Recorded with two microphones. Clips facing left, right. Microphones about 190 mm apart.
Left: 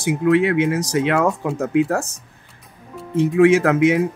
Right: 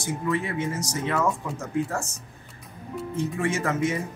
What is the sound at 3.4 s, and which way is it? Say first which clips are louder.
Speech: left 13 dB; 70° left (ahead or behind).